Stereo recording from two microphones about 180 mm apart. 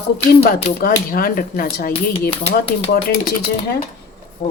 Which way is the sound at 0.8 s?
55° left (ahead or behind).